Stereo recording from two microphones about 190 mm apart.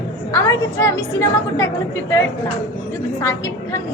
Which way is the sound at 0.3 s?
15° left (ahead or behind).